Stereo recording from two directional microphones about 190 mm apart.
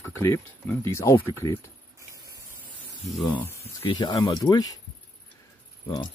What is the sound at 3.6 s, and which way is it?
Speech, 25° left (ahead or behind).